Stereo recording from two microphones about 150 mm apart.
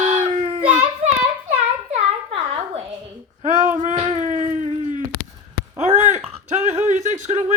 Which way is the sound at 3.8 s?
50° right (ahead or behind).